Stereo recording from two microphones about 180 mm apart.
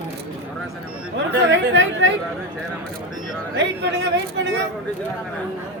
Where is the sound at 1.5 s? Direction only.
90° right.